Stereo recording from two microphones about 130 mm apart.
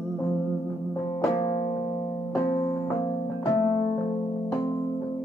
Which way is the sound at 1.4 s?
40° left (ahead or behind).